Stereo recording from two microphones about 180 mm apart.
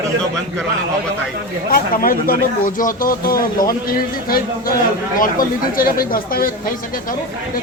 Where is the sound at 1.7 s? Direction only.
55° left (ahead or behind).